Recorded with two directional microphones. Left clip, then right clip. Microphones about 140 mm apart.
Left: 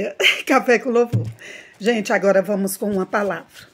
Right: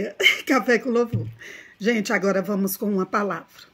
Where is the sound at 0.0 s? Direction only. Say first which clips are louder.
Left 2 dB; 25° right (ahead or behind).